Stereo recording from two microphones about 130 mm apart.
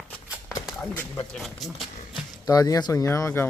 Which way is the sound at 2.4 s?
30° left (ahead or behind).